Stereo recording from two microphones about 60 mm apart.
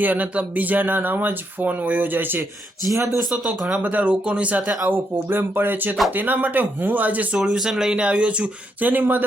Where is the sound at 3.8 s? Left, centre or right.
Right.